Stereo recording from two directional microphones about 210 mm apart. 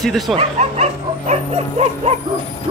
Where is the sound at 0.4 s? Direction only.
30° right (ahead or behind).